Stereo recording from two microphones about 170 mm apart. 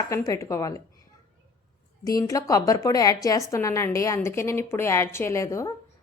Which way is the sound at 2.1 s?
20° left (ahead or behind).